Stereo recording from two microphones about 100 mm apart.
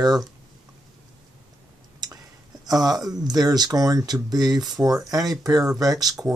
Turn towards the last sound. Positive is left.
turn(degrees=-40)  # may be behind; listen again after turning